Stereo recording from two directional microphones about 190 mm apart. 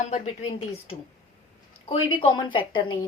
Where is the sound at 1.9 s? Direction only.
25° left (ahead or behind).